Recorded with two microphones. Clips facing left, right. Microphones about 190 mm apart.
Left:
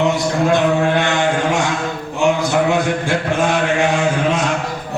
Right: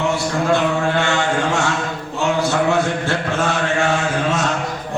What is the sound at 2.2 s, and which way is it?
Mantra, 15° left (ahead or behind).